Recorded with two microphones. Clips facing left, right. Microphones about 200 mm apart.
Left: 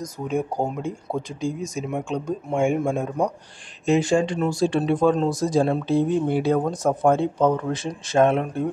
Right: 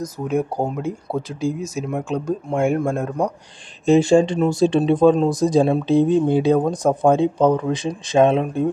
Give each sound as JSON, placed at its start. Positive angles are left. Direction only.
{"t": 0.3, "sound": "speech", "side_deg": -5}
{"t": 3.8, "sound": "speech", "side_deg": -30}